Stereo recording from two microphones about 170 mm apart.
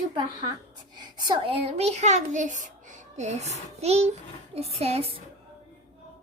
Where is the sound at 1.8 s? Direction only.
40° right (ahead or behind).